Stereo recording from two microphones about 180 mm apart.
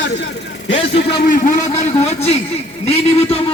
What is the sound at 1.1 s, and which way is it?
Speech, 50° left (ahead or behind).